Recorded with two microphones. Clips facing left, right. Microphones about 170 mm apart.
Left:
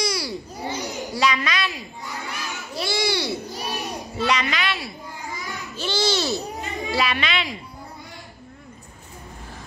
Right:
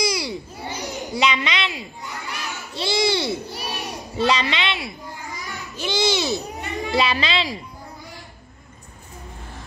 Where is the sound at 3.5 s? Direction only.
65° right (ahead or behind).